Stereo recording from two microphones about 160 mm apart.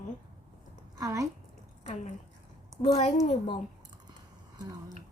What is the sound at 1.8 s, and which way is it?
A woman's voice, 50° left (ahead or behind).